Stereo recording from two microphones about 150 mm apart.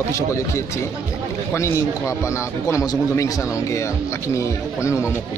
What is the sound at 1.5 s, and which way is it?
A man's voice, 20° left (ahead or behind).